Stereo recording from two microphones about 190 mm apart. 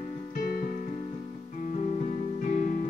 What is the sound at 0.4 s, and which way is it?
Music, 50° left (ahead or behind).